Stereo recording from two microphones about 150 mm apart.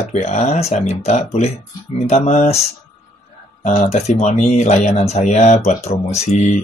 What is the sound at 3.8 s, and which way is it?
Speech, 45° left (ahead or behind).